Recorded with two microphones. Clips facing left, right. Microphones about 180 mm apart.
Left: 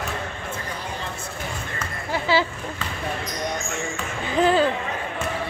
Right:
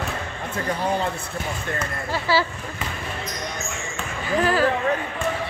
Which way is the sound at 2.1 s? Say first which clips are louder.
Left 1 dB; 20° left (ahead or behind).